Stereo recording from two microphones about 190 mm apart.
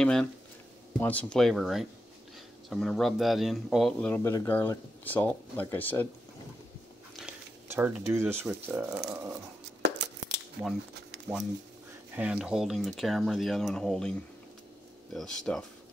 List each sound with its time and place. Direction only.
0.0 s speech: 5° left (ahead or behind)
7.2 s a sound: 10° right (ahead or behind)
8.1 s speech: 10° right (ahead or behind)
9.8 s a sound: 65° right (ahead or behind)
12.2 s speech: 5° right (ahead or behind)
15.1 s speech: 5° left (ahead or behind)